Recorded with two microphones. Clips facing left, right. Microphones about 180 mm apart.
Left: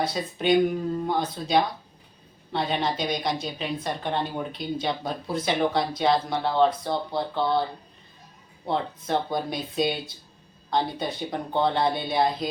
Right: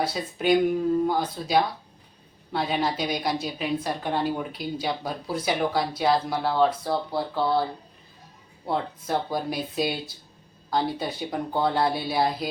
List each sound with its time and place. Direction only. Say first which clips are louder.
0.0 s speech: even; 5° right (ahead or behind)
8.6 s speech: even; 5° right (ahead or behind)